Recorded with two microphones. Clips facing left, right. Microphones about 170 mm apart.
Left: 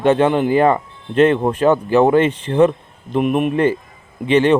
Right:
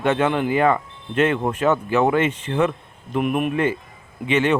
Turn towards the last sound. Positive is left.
turn(degrees=35)  # may be behind; listen again after turning